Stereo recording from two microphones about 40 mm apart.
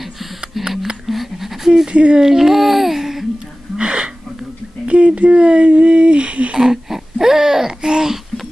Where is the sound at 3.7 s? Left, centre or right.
Right.